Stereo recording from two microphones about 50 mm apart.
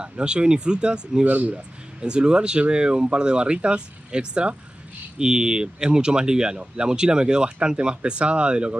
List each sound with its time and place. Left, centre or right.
0.0 s speech: centre